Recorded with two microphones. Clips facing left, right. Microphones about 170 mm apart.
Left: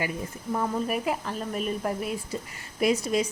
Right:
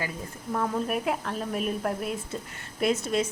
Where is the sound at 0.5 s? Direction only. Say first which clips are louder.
Even; 5° left (ahead or behind).